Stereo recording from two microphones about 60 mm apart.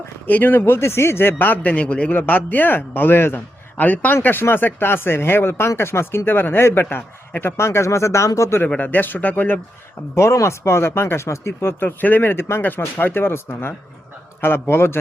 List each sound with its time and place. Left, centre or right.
0.3 s a man's voice: left
8.8 s a man's voice: left
10.3 s speech: left
11.8 s a man's voice: left